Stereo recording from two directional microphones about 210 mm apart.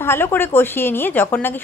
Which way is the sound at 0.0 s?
10° left (ahead or behind).